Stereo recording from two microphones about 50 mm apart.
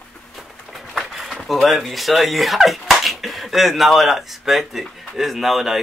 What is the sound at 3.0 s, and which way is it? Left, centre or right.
Speech, centre.